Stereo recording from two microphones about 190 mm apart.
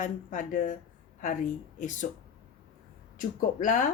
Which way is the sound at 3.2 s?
45° left (ahead or behind).